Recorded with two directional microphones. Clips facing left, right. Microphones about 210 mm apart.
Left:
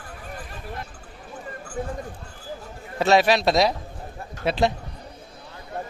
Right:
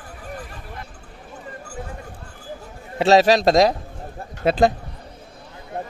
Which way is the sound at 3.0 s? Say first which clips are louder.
Right 4 dB; 35° right (ahead or behind).